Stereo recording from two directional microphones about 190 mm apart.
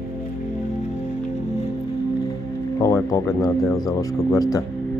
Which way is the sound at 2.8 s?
15° left (ahead or behind).